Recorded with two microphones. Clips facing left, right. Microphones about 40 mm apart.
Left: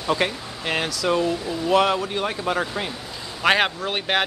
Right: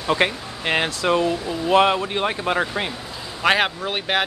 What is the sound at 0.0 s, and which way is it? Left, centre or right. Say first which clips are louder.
Speech: right 2 dB; right.